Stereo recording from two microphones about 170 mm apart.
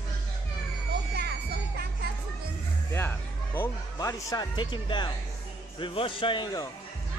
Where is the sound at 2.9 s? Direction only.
15° left (ahead or behind).